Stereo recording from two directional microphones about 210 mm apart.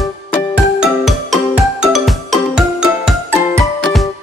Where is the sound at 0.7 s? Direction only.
Centre (ahead or behind).